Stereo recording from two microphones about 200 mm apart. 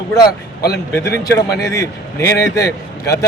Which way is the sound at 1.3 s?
15° left (ahead or behind).